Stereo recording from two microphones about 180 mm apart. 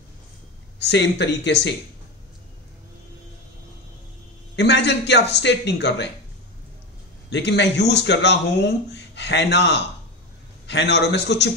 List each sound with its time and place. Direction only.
0.7 s a man's voice: 75° left (ahead or behind)
4.6 s a man's voice: 75° left (ahead or behind)
7.2 s a man's voice: 70° left (ahead or behind)